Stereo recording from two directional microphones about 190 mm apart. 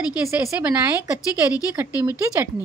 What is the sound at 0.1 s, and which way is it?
Speech, 5° right (ahead or behind).